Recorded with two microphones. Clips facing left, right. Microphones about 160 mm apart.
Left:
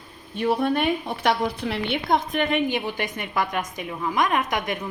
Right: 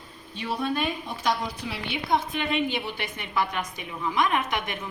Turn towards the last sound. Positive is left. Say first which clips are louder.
# left 2 dB
turn(degrees=45)  # may be behind; listen again after turning